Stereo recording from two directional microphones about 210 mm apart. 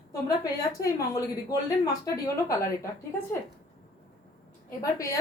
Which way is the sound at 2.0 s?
15° left (ahead or behind).